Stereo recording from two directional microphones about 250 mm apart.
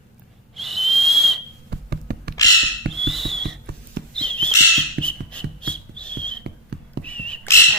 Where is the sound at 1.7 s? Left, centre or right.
Right.